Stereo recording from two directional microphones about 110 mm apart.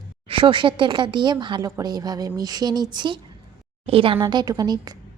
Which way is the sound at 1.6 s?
35° right (ahead or behind).